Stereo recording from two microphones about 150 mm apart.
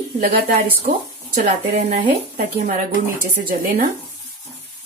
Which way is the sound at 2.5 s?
60° right (ahead or behind).